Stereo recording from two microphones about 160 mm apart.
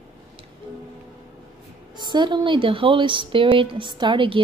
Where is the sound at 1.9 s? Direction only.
30° right (ahead or behind).